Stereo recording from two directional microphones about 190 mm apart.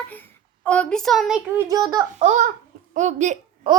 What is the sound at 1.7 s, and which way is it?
Speech, 20° right (ahead or behind).